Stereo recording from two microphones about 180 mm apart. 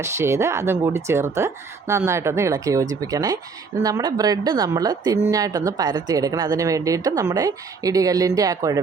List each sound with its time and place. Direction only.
0.0 s speech: 15° right (ahead or behind)